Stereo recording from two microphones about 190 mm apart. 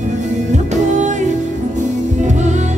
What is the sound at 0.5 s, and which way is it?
Music, 40° right (ahead or behind).